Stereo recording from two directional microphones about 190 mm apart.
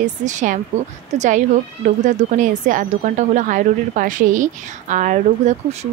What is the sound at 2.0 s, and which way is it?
A woman's voice, 40° right (ahead or behind).